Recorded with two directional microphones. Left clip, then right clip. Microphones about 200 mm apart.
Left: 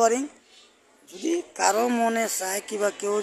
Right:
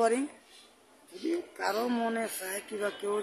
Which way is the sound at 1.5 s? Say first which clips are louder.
Left 11 dB; 25° left (ahead or behind).